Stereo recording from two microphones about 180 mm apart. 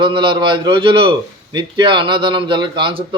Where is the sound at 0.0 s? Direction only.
25° right (ahead or behind).